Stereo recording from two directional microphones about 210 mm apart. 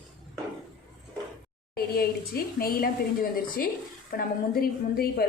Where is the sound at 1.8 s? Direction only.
45° left (ahead or behind).